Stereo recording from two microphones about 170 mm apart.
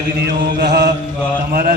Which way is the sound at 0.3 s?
75° right (ahead or behind).